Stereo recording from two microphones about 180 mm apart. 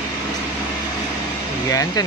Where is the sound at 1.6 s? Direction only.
20° left (ahead or behind).